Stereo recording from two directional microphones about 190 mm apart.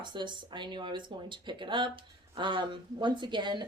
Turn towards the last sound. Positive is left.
turn(degrees=-25)  # may be behind; listen again after turning